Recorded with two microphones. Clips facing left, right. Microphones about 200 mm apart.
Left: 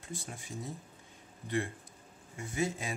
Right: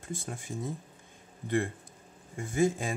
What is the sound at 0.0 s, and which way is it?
Speech, 50° right (ahead or behind).